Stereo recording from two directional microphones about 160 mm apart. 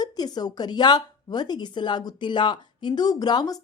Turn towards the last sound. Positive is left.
turn(degrees=25)  # may be behind; listen again after turning